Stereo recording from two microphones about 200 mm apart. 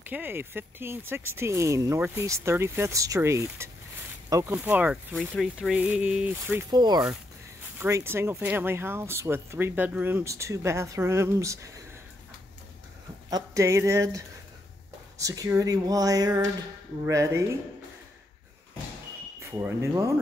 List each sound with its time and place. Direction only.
0.0 s speech: 10° right (ahead or behind)
6.7 s speech: 20° right (ahead or behind)
13.3 s speech: 15° right (ahead or behind)
19.4 s speech: 15° right (ahead or behind)